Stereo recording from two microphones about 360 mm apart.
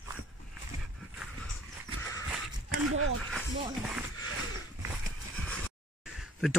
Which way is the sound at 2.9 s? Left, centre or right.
Right.